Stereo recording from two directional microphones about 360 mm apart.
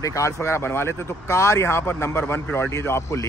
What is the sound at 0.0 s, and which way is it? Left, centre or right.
Speech, centre.